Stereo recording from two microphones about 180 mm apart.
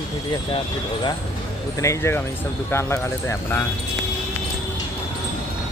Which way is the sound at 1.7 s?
15° left (ahead or behind).